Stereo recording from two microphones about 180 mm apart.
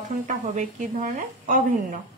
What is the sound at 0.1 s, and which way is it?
A woman's voice, 45° right (ahead or behind).